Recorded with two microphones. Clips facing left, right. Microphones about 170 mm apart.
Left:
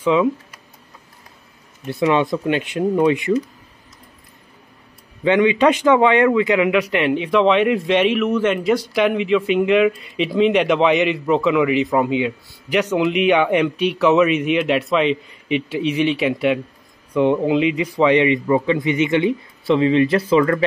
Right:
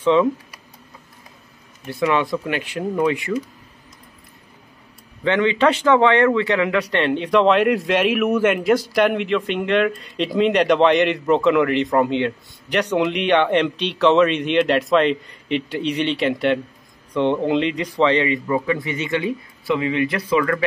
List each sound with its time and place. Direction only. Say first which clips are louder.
0.0 s speech: even; 10° left (ahead or behind)
1.9 s speech: left 2 dB; 20° left (ahead or behind)
5.2 s speech: left 3 dB; 15° left (ahead or behind)